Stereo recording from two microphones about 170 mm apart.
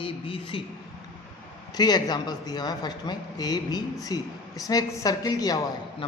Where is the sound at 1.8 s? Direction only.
25° left (ahead or behind).